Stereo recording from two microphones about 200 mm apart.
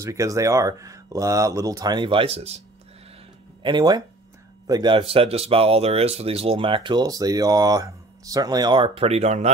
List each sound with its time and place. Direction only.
0.0 s speech: 15° right (ahead or behind); by 2.6 s 30° right (ahead or behind)
3.6 s speech: 20° right (ahead or behind)